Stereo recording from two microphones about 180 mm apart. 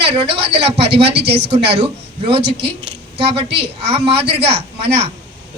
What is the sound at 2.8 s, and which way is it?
A woman's voice, 30° right (ahead or behind).